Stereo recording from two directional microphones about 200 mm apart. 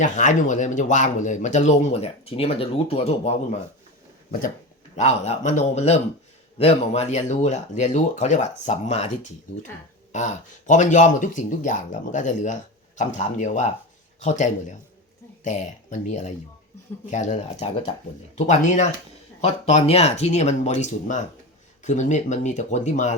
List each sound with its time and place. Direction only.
0.0 s speech: 40° left (ahead or behind)
4.3 s speech: 45° left (ahead or behind)
4.9 s speech: 35° left (ahead or behind)
10.1 s speech: 35° left (ahead or behind)